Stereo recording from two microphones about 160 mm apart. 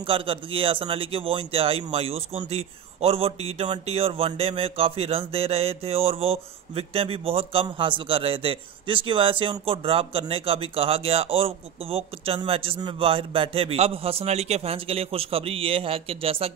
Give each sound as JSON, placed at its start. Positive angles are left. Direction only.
{"t": 0.0, "sound": "a man's voice", "side_deg": -35}